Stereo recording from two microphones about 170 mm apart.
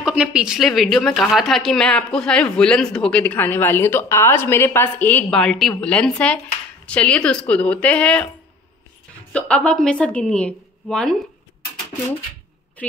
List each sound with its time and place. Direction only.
0.0 s a woman's voice: 5° right (ahead or behind)
9.3 s a woman's voice: 5° left (ahead or behind)